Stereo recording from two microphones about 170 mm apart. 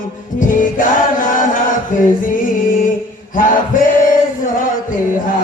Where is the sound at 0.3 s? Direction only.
50° left (ahead or behind).